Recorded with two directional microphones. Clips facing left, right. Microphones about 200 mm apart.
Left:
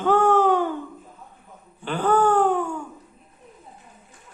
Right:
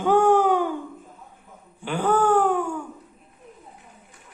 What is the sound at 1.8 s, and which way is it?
Speech, 10° right (ahead or behind).